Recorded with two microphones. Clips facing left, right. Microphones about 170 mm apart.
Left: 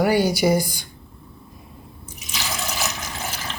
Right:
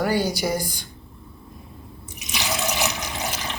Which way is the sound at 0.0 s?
10° left (ahead or behind).